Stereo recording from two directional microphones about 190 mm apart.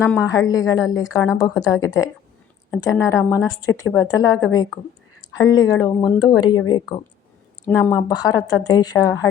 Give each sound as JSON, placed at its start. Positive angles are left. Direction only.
{"t": 0.0, "sound": "a woman's voice", "side_deg": 15}